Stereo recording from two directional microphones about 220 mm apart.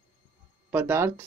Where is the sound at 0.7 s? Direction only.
10° right (ahead or behind).